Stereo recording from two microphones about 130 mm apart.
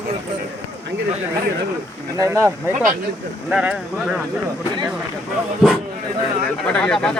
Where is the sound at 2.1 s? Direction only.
25° right (ahead or behind); by 4.2 s centre (ahead or behind).